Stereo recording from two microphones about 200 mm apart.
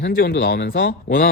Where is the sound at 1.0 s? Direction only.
45° left (ahead or behind).